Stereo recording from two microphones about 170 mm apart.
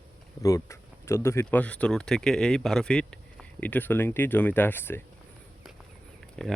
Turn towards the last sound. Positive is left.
turn(degrees=0)  # may be behind; listen again after turning